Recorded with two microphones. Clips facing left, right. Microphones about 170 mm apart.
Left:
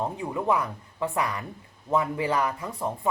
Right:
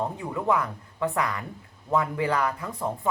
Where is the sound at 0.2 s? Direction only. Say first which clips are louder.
Even; 15° left (ahead or behind).